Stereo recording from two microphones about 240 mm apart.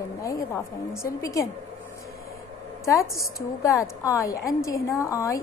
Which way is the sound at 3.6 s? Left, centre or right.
Centre.